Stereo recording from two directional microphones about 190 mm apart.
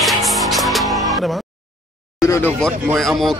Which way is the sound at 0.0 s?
Centre (ahead or behind).